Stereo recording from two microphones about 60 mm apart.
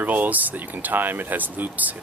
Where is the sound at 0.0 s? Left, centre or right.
Right.